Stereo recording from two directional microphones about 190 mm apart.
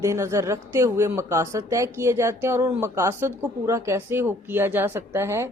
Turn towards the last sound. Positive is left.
turn(degrees=-15)  # may be behind; listen again after turning